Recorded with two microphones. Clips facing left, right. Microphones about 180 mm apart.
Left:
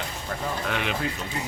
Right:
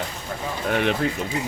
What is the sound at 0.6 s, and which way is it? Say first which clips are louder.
Speech: right 9 dB; 50° right (ahead or behind).